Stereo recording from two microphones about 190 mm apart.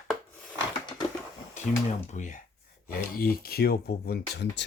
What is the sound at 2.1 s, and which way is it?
Speech, 40° left (ahead or behind).